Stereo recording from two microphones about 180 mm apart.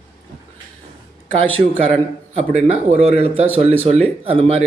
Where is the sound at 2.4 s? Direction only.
40° right (ahead or behind).